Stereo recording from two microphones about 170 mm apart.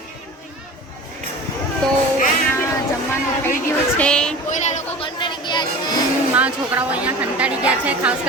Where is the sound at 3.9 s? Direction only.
5° left (ahead or behind).